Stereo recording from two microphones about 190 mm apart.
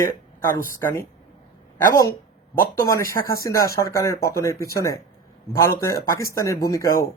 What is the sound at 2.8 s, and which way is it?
Speech, 15° left (ahead or behind).